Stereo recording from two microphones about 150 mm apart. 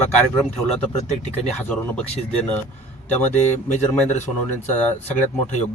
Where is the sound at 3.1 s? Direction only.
50° left (ahead or behind).